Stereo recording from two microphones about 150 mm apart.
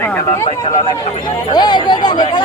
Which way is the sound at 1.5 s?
30° left (ahead or behind).